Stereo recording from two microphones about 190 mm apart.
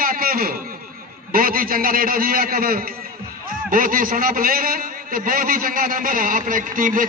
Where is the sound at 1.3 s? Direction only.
50° right (ahead or behind).